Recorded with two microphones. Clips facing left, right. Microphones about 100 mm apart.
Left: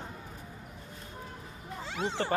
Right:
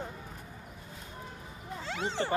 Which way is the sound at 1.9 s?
5° left (ahead or behind).